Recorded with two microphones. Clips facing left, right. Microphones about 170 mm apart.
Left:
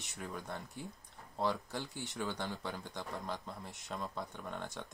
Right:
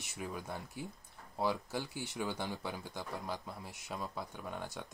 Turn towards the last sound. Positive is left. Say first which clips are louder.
# even
turn(degrees=-5)  # may be behind; listen again after turning